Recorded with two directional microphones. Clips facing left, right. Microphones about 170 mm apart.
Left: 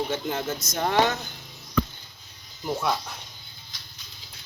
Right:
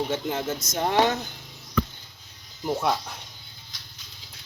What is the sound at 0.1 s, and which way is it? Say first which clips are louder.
Speech: right 1 dB; 20° right (ahead or behind).